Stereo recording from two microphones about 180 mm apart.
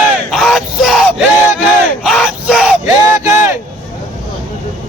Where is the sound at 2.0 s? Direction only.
Centre (ahead or behind).